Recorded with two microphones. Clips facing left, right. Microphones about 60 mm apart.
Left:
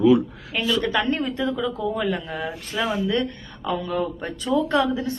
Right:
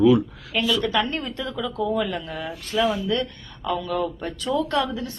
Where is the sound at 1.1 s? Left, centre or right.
Centre.